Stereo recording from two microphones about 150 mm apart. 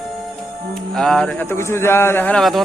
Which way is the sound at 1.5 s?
15° left (ahead or behind).